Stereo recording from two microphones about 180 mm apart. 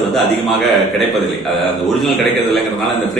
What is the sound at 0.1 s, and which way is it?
A man's voice, centre (ahead or behind).